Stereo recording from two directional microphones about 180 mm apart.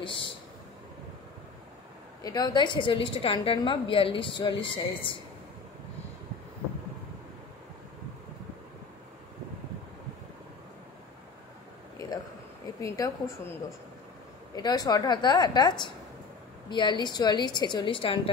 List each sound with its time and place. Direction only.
0.0 s speech: 30° left (ahead or behind)
2.2 s a woman's voice: 20° left (ahead or behind)
12.8 s a woman's voice: 15° left (ahead or behind)